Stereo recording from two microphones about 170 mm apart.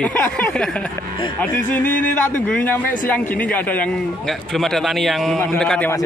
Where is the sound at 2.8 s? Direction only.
50° left (ahead or behind).